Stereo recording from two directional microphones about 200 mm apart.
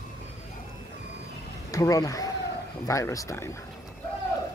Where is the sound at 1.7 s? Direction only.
15° left (ahead or behind).